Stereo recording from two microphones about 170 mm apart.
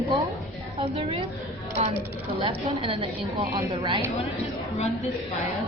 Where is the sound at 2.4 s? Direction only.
30° right (ahead or behind).